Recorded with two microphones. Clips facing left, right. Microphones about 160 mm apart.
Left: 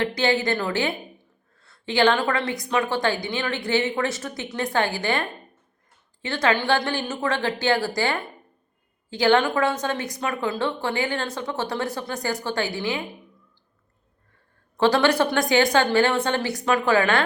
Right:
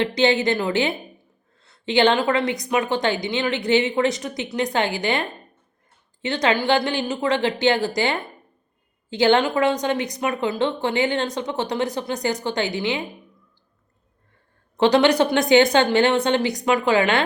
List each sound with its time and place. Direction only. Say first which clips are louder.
0.0 s a woman's voice: right 3 dB; 20° right (ahead or behind)
6.2 s a woman's voice: right 2 dB; 20° right (ahead or behind)
14.8 s a woman's voice: right 3 dB; 20° right (ahead or behind)